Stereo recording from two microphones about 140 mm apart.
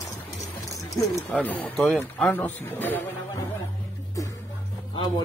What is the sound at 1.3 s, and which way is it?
Speech, 10° left (ahead or behind).